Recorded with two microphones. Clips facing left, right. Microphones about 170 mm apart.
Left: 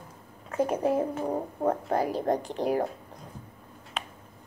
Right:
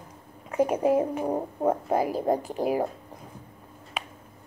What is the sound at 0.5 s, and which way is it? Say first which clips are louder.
Speech: right 3 dB; 10° right (ahead or behind).